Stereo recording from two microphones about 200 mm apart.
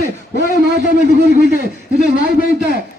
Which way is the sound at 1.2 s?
55° right (ahead or behind).